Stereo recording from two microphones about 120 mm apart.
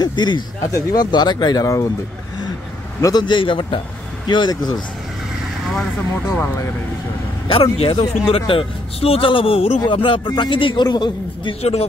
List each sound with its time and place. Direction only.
0.0 s a sound: 40° left (ahead or behind)
0.6 s a man's voice: 25° left (ahead or behind)
3.0 s a man's voice: 35° left (ahead or behind)
6.4 s speech: 25° left (ahead or behind)
7.4 s a man's voice: 45° left (ahead or behind)
11.6 s speech: 60° left (ahead or behind)